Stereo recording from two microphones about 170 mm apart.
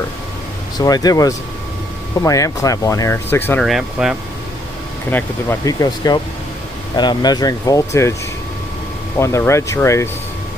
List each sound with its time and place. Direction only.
0.7 s speech: 20° left (ahead or behind)
3.6 s speech: 5° right (ahead or behind)
5.1 s speech: 15° left (ahead or behind)
9.2 s speech: 15° left (ahead or behind)